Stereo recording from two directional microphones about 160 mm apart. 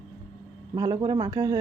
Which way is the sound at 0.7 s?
25° right (ahead or behind).